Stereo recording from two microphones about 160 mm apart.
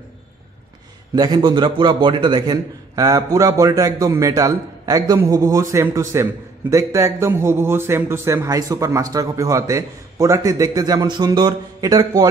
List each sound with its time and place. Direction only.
1.1 s a man's voice: 25° right (ahead or behind)